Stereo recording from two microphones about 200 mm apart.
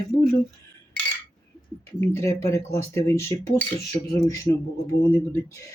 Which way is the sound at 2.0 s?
15° left (ahead or behind).